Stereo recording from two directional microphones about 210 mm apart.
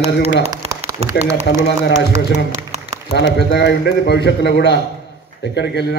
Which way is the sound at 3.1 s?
55° left (ahead or behind).